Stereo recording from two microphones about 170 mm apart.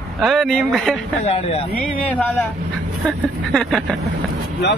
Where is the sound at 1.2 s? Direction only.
35° left (ahead or behind).